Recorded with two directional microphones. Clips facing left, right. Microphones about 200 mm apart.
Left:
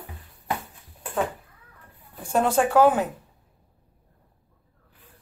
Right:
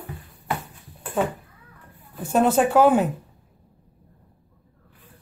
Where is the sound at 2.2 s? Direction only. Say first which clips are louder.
Right 3 dB; 25° right (ahead or behind).